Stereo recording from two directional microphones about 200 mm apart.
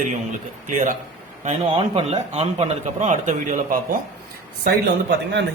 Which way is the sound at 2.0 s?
30° right (ahead or behind).